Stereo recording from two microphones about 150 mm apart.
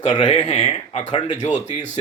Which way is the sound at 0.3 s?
45° left (ahead or behind).